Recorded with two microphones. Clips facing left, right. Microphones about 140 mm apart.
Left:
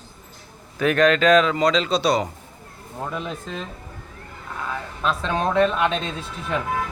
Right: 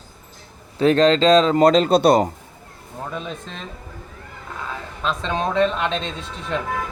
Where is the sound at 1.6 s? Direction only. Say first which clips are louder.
Right 6 dB; 50° right (ahead or behind).